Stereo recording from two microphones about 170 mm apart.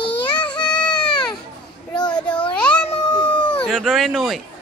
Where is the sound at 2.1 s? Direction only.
5° left (ahead or behind).